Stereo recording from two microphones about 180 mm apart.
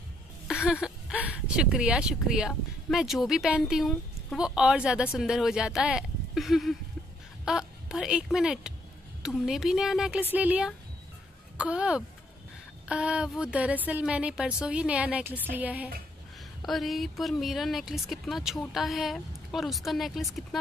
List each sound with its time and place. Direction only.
0.7 s a woman's voice: 5° right (ahead or behind)